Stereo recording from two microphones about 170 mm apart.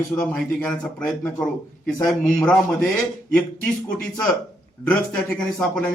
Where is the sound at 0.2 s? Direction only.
5° left (ahead or behind).